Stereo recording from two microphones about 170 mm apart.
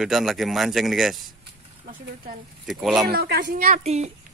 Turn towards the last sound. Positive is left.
turn(degrees=-55)  # may be behind; listen again after turning